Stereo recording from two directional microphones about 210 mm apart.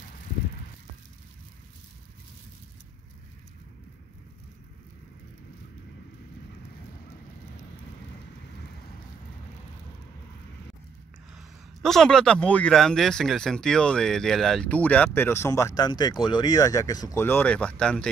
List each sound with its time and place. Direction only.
11.3 s a man's voice: centre (ahead or behind)